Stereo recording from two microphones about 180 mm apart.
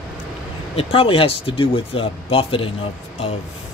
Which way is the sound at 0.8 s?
30° left (ahead or behind).